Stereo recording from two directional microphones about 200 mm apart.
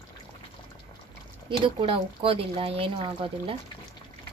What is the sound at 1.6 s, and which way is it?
Speech, 25° right (ahead or behind).